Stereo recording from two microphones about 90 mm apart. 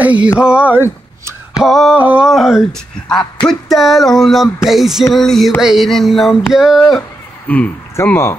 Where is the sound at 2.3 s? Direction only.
5° right (ahead or behind).